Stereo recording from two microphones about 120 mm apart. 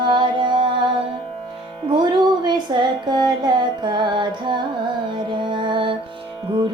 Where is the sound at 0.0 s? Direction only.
40° right (ahead or behind).